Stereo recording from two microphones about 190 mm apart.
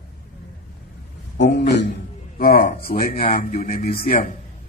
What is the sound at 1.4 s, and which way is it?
Speech, 65° left (ahead or behind).